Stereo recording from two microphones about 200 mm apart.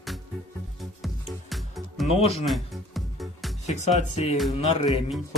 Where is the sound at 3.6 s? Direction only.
35° left (ahead or behind).